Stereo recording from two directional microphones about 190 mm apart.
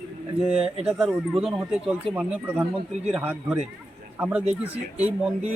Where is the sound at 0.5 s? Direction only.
30° right (ahead or behind).